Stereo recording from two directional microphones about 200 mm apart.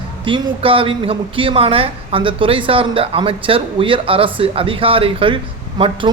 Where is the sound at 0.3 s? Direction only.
25° right (ahead or behind).